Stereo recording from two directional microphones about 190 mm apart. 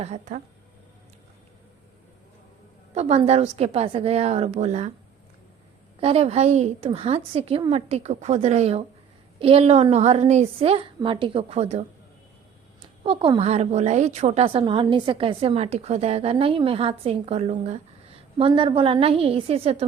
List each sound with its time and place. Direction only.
0.0 s a woman's voice: 40° right (ahead or behind)
2.9 s a woman's voice: 35° right (ahead or behind)
6.0 s a woman's voice: 30° right (ahead or behind)